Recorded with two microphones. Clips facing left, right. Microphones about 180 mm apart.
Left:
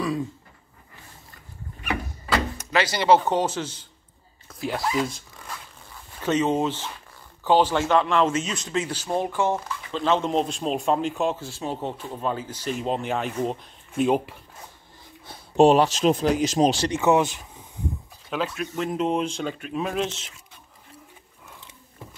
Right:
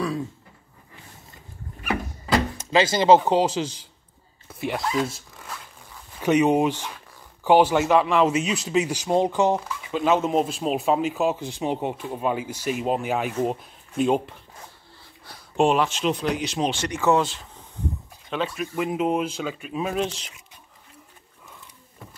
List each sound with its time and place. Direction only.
2.5 s speech: 25° right (ahead or behind)
4.6 s speech: centre (ahead or behind)
6.1 s speech: 15° right (ahead or behind)
11.3 s speech: 15° right (ahead or behind); by 14.3 s 5° left (ahead or behind)
15.5 s speech: 35° left (ahead or behind)
16.9 s speech: 20° left (ahead or behind)
18.3 s speech: centre (ahead or behind)